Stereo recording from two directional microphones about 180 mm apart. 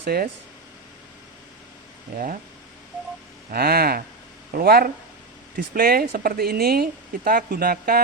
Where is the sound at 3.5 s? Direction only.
60° right (ahead or behind).